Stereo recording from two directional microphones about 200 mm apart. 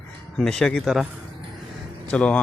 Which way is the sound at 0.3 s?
Centre (ahead or behind).